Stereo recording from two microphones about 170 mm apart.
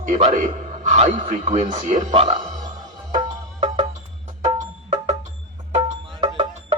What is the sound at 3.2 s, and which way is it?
Music, 30° right (ahead or behind).